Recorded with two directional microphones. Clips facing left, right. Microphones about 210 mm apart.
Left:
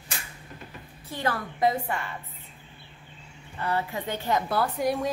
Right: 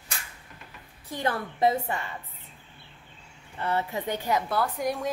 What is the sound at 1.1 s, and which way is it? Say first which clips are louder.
Speech: even; 20° right (ahead or behind).